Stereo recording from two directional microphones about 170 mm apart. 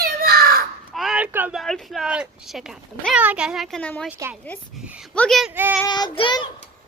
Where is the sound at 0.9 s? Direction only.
Centre (ahead or behind).